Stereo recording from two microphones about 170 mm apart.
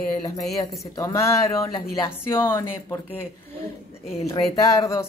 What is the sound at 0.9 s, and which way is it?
Speech, 15° left (ahead or behind).